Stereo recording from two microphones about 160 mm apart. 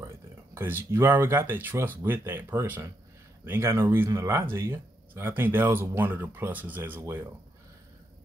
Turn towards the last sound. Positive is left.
turn(degrees=-15)  # may be behind; listen again after turning